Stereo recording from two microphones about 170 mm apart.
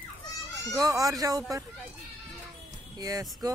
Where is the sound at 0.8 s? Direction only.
20° right (ahead or behind).